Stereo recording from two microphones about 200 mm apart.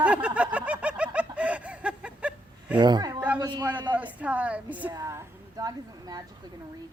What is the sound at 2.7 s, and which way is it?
Speech, 20° right (ahead or behind).